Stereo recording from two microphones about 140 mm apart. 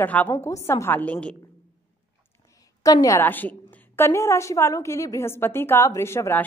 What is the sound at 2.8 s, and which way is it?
A woman's voice, 25° left (ahead or behind).